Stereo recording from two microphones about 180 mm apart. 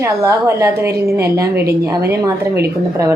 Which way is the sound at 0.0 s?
15° right (ahead or behind).